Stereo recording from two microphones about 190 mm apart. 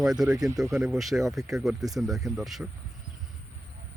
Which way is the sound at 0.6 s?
5° right (ahead or behind).